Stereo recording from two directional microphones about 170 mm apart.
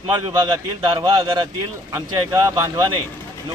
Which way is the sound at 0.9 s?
25° right (ahead or behind).